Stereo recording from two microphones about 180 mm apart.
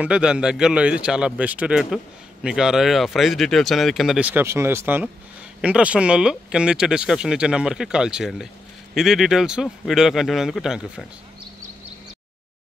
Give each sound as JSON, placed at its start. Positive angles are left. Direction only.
{"t": 0.0, "sound": "speech", "side_deg": -5}